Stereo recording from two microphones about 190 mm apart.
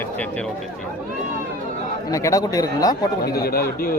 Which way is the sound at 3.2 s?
55° left (ahead or behind).